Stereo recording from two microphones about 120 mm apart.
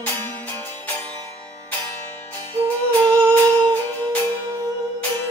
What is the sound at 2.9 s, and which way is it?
Music, 15° left (ahead or behind).